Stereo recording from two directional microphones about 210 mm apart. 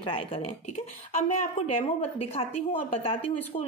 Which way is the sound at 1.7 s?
30° left (ahead or behind).